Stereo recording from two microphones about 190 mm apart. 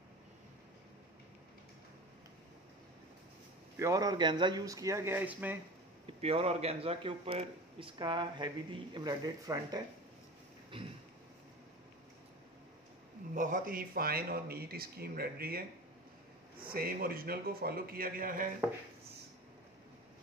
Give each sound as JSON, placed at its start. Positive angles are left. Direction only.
{"t": 3.7, "sound": "a man's voice", "side_deg": -15}
{"t": 6.2, "sound": "a man's voice", "side_deg": -30}
{"t": 10.7, "sound": "a sound", "side_deg": -25}
{"t": 13.3, "sound": "a man's voice", "side_deg": -45}